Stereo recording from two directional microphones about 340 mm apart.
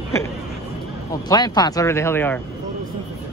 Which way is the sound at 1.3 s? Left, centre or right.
Centre.